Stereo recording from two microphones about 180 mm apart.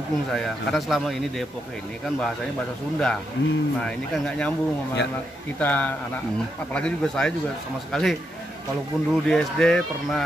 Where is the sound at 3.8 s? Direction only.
5° left (ahead or behind).